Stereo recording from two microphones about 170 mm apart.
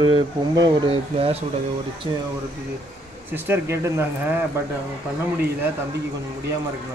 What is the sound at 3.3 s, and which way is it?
Speech, 15° right (ahead or behind).